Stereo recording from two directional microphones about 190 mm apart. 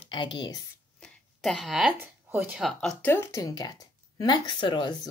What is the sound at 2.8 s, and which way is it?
A woman's voice, 5° left (ahead or behind).